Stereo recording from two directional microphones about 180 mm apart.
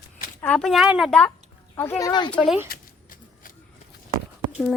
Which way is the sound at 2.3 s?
5° left (ahead or behind).